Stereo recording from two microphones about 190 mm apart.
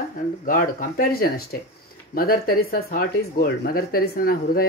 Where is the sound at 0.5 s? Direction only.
45° left (ahead or behind).